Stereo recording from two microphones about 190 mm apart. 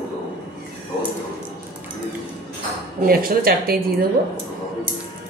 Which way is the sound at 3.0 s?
50° right (ahead or behind).